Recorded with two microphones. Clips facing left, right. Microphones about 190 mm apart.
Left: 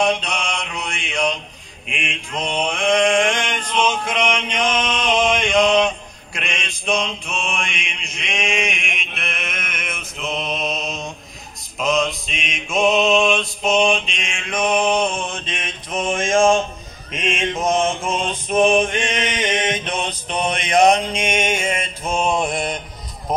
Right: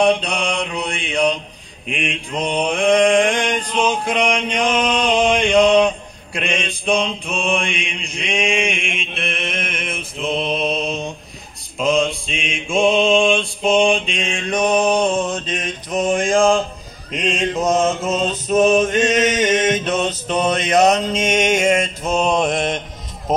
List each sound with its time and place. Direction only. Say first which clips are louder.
0.0 s mantra: right 4 dB; 35° right (ahead or behind)